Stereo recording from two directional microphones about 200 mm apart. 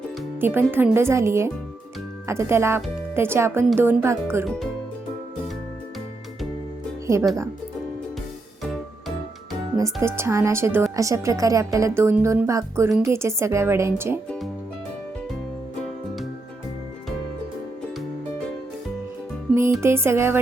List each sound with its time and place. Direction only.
0.3 s speech: 10° right (ahead or behind)
8.6 s music: centre (ahead or behind)
9.7 s speech: 15° right (ahead or behind)
19.8 s speech: 15° right (ahead or behind)